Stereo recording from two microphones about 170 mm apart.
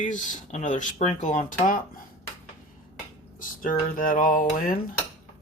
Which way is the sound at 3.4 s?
55° left (ahead or behind).